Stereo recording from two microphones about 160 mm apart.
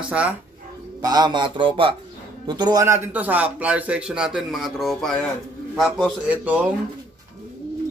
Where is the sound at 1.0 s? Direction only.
25° right (ahead or behind); by 6.2 s centre (ahead or behind).